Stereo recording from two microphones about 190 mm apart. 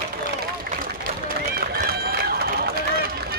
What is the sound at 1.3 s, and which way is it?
Run, 50° right (ahead or behind).